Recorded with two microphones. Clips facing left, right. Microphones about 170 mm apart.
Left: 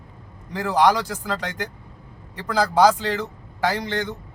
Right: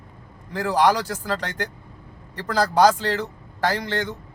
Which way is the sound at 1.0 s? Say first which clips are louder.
Right 1 dB; 10° left (ahead or behind).